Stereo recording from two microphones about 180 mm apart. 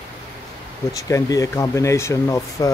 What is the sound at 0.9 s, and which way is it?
Speech, 20° left (ahead or behind).